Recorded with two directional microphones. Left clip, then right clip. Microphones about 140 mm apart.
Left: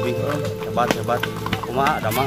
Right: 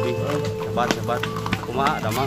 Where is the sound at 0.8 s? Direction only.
30° left (ahead or behind).